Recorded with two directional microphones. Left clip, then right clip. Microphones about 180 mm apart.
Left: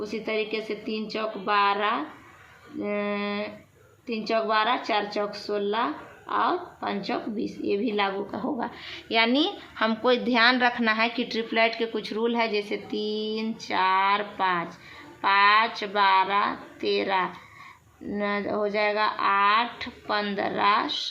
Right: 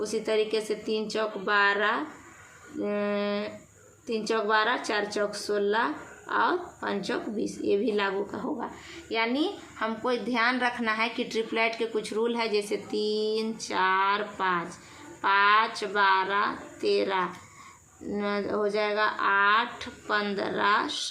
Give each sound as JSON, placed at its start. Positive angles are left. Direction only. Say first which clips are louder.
{"t": 0.0, "sound": "speech", "louder": "right 2 dB", "side_deg": 20}
{"t": 8.5, "sound": "a woman's voice", "louder": "left 4 dB", "side_deg": 45}